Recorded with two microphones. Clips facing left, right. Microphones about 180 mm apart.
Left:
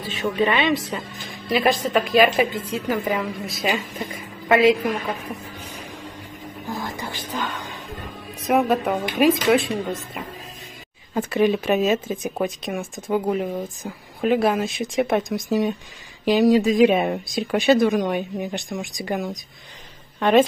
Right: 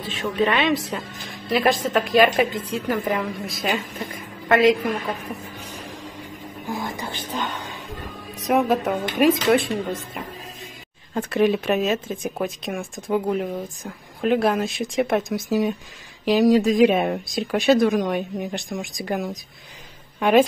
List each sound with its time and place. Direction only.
0.2 s speech: centre (ahead or behind)
6.7 s music: 15° right (ahead or behind)
8.5 s a woman's voice: centre (ahead or behind)